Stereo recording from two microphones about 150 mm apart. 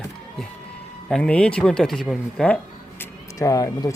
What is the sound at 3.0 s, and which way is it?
Speech, 20° left (ahead or behind).